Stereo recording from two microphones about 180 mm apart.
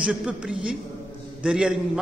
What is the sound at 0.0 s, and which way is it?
A man's voice, 5° right (ahead or behind).